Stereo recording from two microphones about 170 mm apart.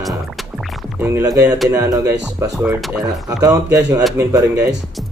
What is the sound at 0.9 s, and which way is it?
Speech, 15° right (ahead or behind).